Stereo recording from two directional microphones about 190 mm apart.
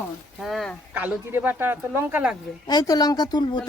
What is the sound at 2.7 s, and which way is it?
A woman's voice, 20° left (ahead or behind).